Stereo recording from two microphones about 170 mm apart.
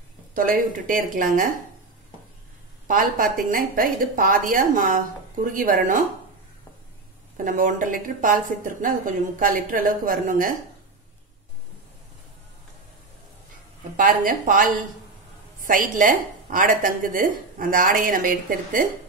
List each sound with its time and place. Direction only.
0.3 s a woman's voice: 55° right (ahead or behind)
2.9 s a woman's voice: 55° right (ahead or behind)
7.4 s a woman's voice: 50° right (ahead or behind)
13.9 s a woman's voice: 50° right (ahead or behind)